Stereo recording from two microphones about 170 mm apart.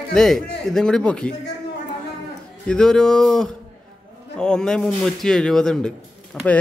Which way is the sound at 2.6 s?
5° left (ahead or behind).